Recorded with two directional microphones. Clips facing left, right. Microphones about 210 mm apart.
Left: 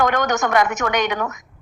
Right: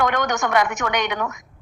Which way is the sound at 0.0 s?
40° left (ahead or behind).